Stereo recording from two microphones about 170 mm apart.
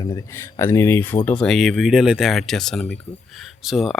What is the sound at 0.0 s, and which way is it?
Speech, 20° left (ahead or behind).